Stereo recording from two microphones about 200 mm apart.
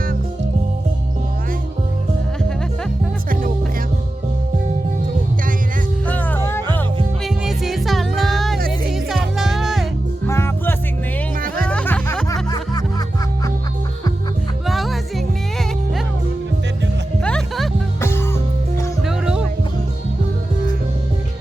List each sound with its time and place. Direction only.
6.1 s music: 10° left (ahead or behind)
7.3 s music: centre (ahead or behind)
8.5 s music: 50° right (ahead or behind)
8.9 s music: centre (ahead or behind)
10.2 s music: 10° left (ahead or behind)
11.3 s music: 45° right (ahead or behind)
11.6 s music: 5° left (ahead or behind)
12.3 s music: 20° left (ahead or behind)
14.7 s music: centre (ahead or behind)
17.2 s music: 5° left (ahead or behind)
19.0 s music: 5° right (ahead or behind)